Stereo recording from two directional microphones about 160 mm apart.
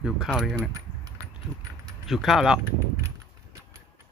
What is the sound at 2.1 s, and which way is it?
Speech, centre (ahead or behind).